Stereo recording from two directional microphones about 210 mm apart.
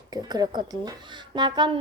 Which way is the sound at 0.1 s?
20° right (ahead or behind).